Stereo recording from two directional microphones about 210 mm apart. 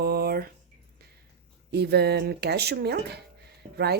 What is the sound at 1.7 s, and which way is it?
A woman's voice, 50° right (ahead or behind).